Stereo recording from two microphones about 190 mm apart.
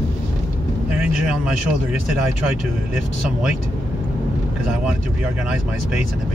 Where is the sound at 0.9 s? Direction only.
5° right (ahead or behind).